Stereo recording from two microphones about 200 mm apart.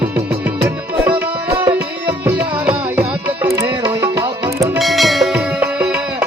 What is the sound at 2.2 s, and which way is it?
Music, 10° right (ahead or behind).